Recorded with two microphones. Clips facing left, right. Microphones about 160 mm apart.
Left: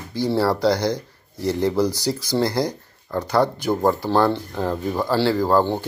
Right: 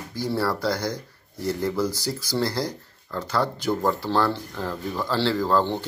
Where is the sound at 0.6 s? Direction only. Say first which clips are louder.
Left 7 dB; 75° left (ahead or behind).